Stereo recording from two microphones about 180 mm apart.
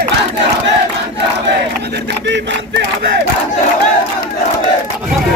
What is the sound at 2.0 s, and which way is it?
Speech, 75° right (ahead or behind).